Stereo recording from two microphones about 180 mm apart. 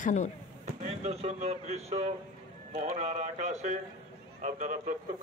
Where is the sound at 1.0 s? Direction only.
35° right (ahead or behind).